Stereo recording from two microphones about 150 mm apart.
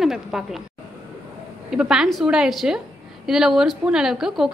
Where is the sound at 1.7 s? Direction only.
5° right (ahead or behind).